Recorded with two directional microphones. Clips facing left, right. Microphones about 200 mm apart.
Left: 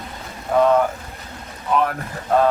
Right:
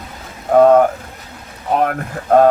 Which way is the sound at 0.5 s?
50° right (ahead or behind).